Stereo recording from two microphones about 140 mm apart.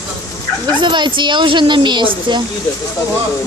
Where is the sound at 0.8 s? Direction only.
35° right (ahead or behind).